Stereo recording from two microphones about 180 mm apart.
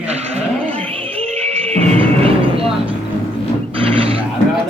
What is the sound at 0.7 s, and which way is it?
Music, 35° right (ahead or behind).